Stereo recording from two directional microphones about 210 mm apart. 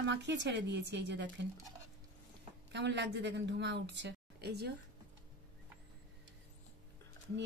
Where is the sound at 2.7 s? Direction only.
55° right (ahead or behind).